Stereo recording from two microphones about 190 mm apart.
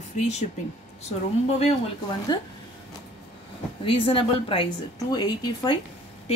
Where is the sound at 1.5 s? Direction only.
30° left (ahead or behind).